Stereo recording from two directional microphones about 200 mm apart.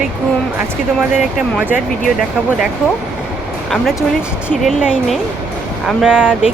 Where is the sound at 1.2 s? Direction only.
5° right (ahead or behind).